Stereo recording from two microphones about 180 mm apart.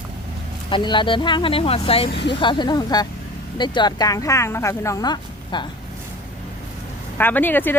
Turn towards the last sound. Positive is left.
turn(degrees=10)  # may be behind; listen again after turning